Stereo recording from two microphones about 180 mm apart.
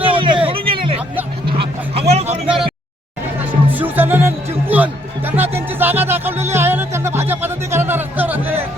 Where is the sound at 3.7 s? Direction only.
10° right (ahead or behind).